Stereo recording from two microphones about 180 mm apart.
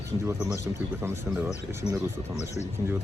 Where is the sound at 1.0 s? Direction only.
15° right (ahead or behind).